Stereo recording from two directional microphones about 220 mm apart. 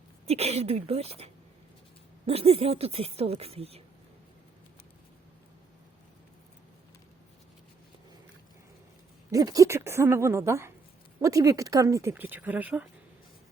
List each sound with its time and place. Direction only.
0.3 s speech: 30° right (ahead or behind)
9.3 s a woman's voice: 15° right (ahead or behind)